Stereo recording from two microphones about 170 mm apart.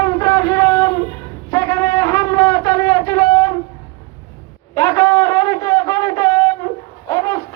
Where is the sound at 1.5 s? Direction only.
20° left (ahead or behind).